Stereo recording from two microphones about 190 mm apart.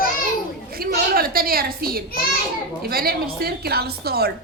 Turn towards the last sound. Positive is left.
turn(degrees=-55)  # may be behind; listen again after turning